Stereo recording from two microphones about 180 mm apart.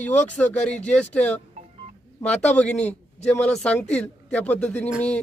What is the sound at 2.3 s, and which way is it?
Speech, 5° left (ahead or behind).